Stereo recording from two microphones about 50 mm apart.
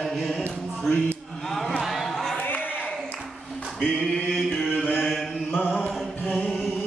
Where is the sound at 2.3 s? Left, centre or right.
Left.